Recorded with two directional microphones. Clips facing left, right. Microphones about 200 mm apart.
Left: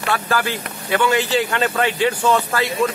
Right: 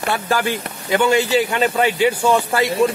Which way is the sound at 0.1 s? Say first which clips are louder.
Right 1 dB; 15° right (ahead or behind).